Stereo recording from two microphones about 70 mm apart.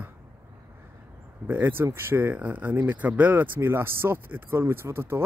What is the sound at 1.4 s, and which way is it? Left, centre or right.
Speech, right.